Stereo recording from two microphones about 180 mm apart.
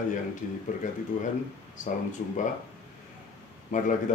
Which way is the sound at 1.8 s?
45° left (ahead or behind).